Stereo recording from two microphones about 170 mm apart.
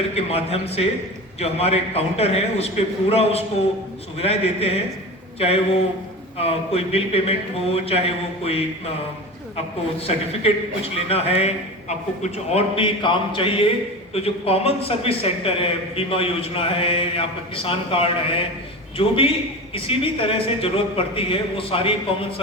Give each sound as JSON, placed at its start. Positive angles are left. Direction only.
{"t": 0.1, "sound": "a man's voice", "side_deg": 35}
{"t": 10.0, "sound": "a man's voice", "side_deg": 35}